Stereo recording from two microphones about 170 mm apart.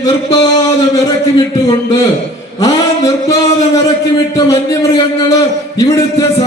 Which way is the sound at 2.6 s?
20° left (ahead or behind).